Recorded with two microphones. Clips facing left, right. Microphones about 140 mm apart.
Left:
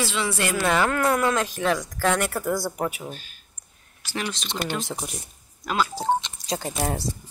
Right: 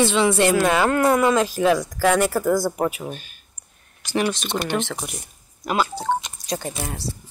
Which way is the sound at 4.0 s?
15° right (ahead or behind).